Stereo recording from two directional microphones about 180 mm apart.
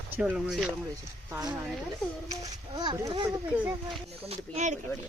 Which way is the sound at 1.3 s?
20° right (ahead or behind).